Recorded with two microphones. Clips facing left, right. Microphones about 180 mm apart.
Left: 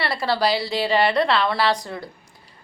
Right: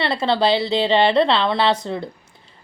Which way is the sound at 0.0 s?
25° right (ahead or behind).